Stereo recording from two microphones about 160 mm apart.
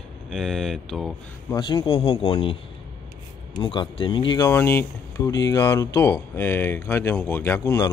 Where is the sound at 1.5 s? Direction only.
25° left (ahead or behind).